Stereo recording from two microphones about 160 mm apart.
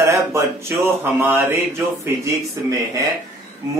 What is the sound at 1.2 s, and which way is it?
Mantra, 15° right (ahead or behind).